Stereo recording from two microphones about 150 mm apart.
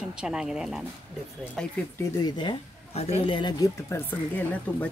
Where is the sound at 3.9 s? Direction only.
10° left (ahead or behind).